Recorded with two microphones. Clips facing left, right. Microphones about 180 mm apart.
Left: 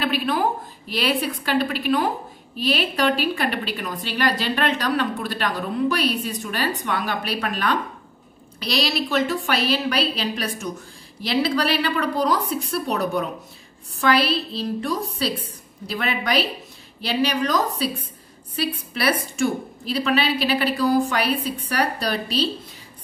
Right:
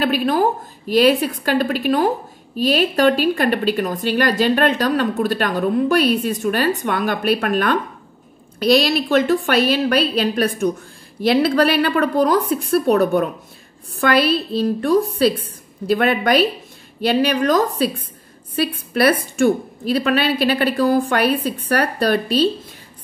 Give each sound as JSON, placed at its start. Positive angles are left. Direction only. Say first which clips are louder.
{"t": 0.0, "sound": "a woman's voice", "louder": "right 5 dB", "side_deg": -45}